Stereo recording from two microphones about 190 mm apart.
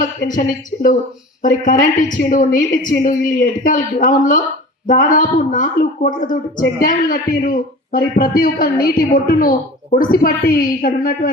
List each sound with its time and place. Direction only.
0.0 s a woman's voice: 45° left (ahead or behind)